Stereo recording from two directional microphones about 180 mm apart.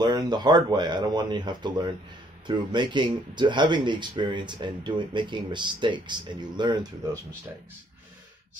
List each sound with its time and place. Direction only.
0.0 s speech: 25° right (ahead or behind)